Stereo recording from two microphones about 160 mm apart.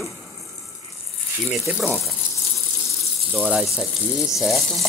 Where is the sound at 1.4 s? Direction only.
Centre (ahead or behind).